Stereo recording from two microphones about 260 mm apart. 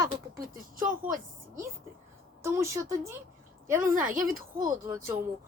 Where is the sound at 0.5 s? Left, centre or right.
Right.